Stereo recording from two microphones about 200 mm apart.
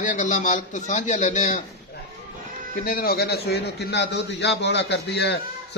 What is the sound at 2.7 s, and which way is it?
A man's voice, 45° left (ahead or behind).